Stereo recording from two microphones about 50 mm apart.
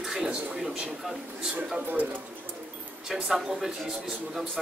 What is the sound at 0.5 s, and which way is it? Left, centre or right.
Speech, centre.